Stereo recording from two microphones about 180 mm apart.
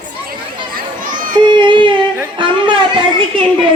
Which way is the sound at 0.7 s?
50° right (ahead or behind).